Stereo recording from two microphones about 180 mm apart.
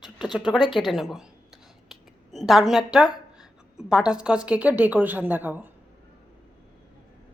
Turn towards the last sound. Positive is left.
turn(degrees=-10)  # may be behind; listen again after turning